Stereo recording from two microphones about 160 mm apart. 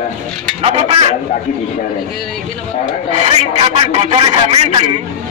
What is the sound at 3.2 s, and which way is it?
Cattle, 35° right (ahead or behind).